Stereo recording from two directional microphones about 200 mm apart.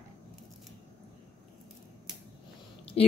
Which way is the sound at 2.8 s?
30° left (ahead or behind).